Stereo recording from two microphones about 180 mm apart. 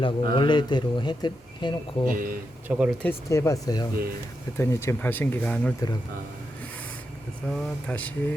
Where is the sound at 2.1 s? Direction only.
50° right (ahead or behind).